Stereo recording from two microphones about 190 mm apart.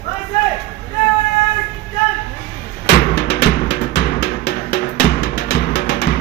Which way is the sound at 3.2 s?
60° left (ahead or behind).